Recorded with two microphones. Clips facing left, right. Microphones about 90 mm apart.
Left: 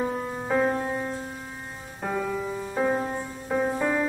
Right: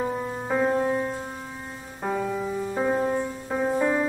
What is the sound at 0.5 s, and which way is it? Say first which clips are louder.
Music: right 2 dB; centre (ahead or behind).